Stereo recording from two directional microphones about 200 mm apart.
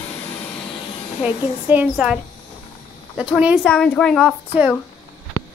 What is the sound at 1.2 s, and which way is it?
Speech, 10° right (ahead or behind).